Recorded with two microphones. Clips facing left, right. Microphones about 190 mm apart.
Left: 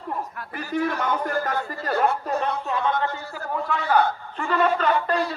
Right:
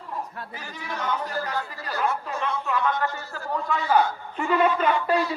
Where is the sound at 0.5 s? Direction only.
60° left (ahead or behind).